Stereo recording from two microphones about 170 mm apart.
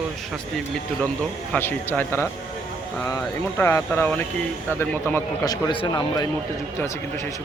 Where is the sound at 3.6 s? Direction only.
15° left (ahead or behind).